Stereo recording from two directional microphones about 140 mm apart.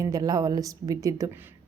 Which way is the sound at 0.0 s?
25° right (ahead or behind).